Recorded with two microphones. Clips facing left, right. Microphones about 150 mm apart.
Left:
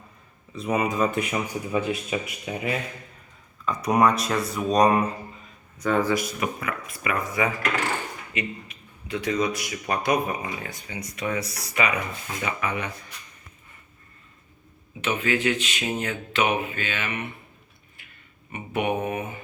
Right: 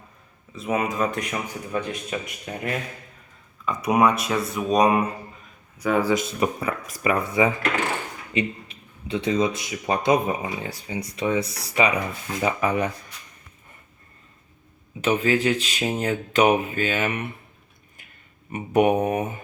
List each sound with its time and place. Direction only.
0.5 s a man's voice: centre (ahead or behind)
6.1 s speech: 30° right (ahead or behind)
15.0 s speech: 35° right (ahead or behind)
18.5 s speech: 40° right (ahead or behind)